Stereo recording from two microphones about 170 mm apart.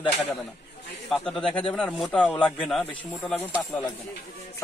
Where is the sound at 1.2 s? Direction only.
5° left (ahead or behind).